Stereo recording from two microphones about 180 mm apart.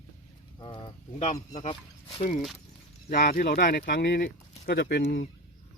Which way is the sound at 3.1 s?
55° left (ahead or behind).